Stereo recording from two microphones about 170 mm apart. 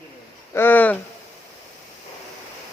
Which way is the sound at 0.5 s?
10° left (ahead or behind).